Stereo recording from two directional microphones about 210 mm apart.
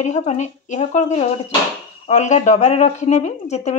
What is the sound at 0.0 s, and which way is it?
Speech, 35° left (ahead or behind).